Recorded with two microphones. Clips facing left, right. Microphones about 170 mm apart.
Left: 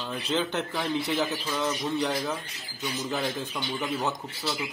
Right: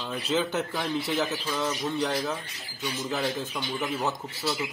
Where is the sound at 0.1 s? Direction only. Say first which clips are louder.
Right 1 dB; 5° right (ahead or behind).